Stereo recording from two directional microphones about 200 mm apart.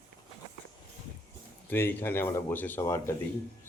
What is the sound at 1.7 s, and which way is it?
Speech, 10° left (ahead or behind).